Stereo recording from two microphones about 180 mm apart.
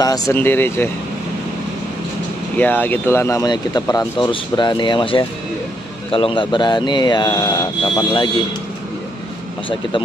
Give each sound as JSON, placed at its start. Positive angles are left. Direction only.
{"t": 0.0, "sound": "speech", "side_deg": 20}
{"t": 2.5, "sound": "speech", "side_deg": 10}